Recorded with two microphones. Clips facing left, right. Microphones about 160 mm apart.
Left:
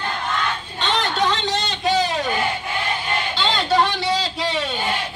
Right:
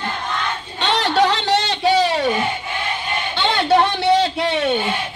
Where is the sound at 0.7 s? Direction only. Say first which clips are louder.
Right 5 dB; 70° right (ahead or behind).